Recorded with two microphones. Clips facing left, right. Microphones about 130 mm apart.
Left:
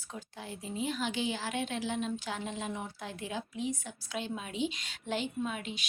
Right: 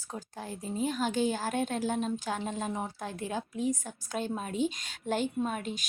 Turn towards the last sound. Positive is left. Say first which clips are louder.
# right 4 dB
turn(degrees=-45)  # may be behind; listen again after turning